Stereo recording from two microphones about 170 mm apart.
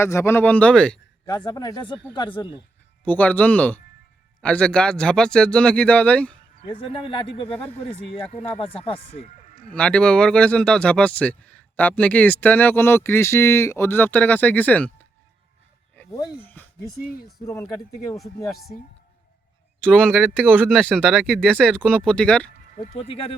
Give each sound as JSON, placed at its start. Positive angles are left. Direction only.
{"t": 0.0, "sound": "speech", "side_deg": 15}
{"t": 1.5, "sound": "speech", "side_deg": 25}
{"t": 3.0, "sound": "speech", "side_deg": 10}
{"t": 6.6, "sound": "speech", "side_deg": 30}
{"t": 9.6, "sound": "speech", "side_deg": 5}
{"t": 16.4, "sound": "a sound", "side_deg": 10}
{"t": 17.4, "sound": "speech", "side_deg": 15}
{"t": 18.2, "sound": "speech", "side_deg": 0}
{"t": 19.8, "sound": "speech", "side_deg": 5}
{"t": 23.0, "sound": "speech", "side_deg": 35}